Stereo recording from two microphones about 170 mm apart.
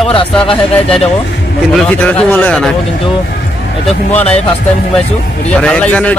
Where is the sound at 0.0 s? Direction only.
30° left (ahead or behind).